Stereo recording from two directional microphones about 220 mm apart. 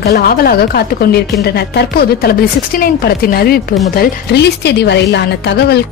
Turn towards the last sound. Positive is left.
turn(degrees=50)  # may be behind; listen again after turning